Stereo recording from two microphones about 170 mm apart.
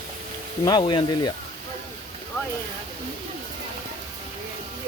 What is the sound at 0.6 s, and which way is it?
Speech, 25° left (ahead or behind).